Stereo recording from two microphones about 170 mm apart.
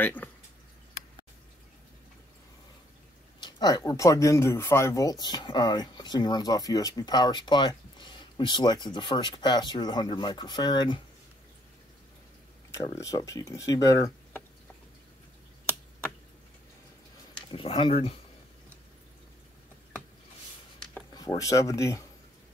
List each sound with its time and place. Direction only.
0.0 s speech: 10° left (ahead or behind)
3.3 s speech: 25° left (ahead or behind)
12.7 s speech: 20° left (ahead or behind)
17.5 s speech: 30° left (ahead or behind)
21.1 s speech: 20° left (ahead or behind)